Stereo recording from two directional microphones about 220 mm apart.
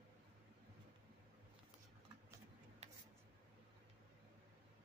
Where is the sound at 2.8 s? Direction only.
30° right (ahead or behind).